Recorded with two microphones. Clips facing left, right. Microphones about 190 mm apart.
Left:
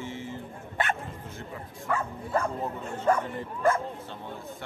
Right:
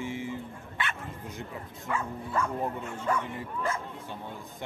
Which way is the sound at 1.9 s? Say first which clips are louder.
Left 4 dB; 40° left (ahead or behind).